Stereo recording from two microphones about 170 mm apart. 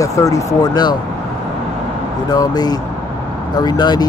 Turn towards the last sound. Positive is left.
turn(degrees=25)  # may be behind; listen again after turning